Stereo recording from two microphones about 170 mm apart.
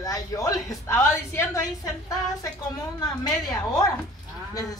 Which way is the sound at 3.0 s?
25° left (ahead or behind).